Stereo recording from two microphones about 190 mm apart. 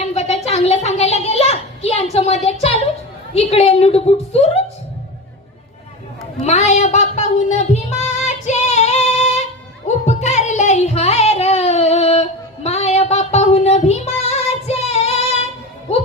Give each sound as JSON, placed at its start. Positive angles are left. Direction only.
{"t": 0.1, "sound": "a sound", "side_deg": 35}
{"t": 3.3, "sound": "a woman's voice", "side_deg": 35}
{"t": 6.4, "sound": "music", "side_deg": 35}